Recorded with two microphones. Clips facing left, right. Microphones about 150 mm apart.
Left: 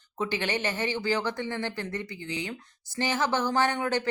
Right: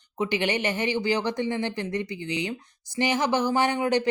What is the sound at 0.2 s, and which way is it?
Speech, 15° right (ahead or behind).